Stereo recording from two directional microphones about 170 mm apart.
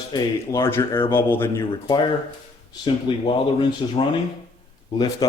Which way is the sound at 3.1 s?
30° left (ahead or behind).